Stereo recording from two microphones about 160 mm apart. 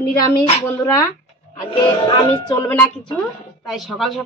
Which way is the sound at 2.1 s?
25° left (ahead or behind).